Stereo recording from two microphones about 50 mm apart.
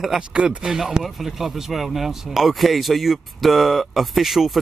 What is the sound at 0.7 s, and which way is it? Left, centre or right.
Speech, centre.